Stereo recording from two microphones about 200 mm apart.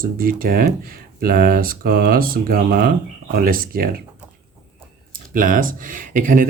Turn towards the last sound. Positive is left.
turn(degrees=-40)  # may be behind; listen again after turning